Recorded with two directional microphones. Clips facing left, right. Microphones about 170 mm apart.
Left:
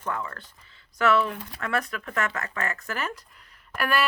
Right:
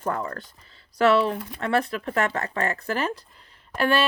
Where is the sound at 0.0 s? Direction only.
40° right (ahead or behind).